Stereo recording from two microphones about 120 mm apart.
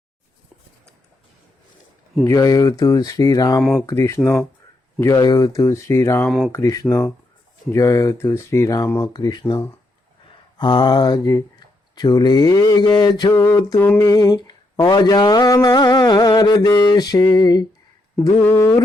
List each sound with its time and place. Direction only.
2.2 s mantra: 30° left (ahead or behind)
3.8 s speech: 25° left (ahead or behind)
6.2 s speech: 5° left (ahead or behind)
6.5 s speech: 30° left (ahead or behind)
9.1 s mantra: 35° left (ahead or behind)
10.2 s speech: 40° left (ahead or behind)
11.9 s mantra: 35° left (ahead or behind)
13.4 s speech: 20° left (ahead or behind)
14.0 s mantra: 30° left (ahead or behind)
18.4 s speech: 20° left (ahead or behind)